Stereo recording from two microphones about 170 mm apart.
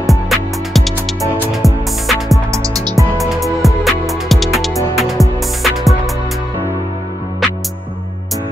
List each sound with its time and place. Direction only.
0.0 s music: centre (ahead or behind)
2.5 s music: 20° right (ahead or behind)
3.2 s music: centre (ahead or behind)